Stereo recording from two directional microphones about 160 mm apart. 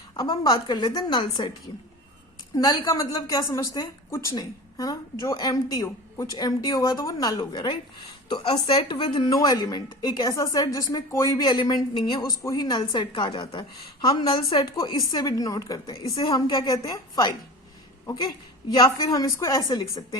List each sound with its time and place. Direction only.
0.2 s a woman's voice: 25° left (ahead or behind)
2.6 s a woman's voice: 25° left (ahead or behind)